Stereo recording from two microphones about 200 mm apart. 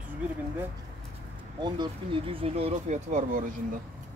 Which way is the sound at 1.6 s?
20° right (ahead or behind).